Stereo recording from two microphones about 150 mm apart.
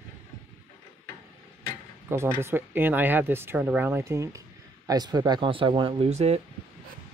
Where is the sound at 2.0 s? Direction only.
15° right (ahead or behind); by 6.4 s 45° right (ahead or behind).